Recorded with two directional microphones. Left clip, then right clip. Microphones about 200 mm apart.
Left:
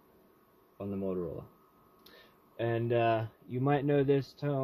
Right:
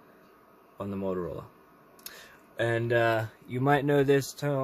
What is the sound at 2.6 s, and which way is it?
Speech, 20° right (ahead or behind).